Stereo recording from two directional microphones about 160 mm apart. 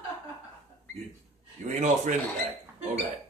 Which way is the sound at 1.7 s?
50° right (ahead or behind).